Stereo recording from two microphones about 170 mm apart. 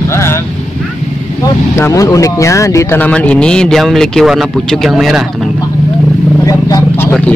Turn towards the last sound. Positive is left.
turn(degrees=10)  # may be behind; listen again after turning